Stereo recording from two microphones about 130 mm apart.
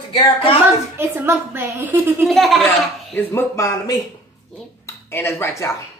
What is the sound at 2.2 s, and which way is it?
Speech, centre (ahead or behind).